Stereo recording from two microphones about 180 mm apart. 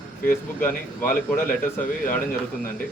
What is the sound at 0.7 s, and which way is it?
Speech, 50° left (ahead or behind).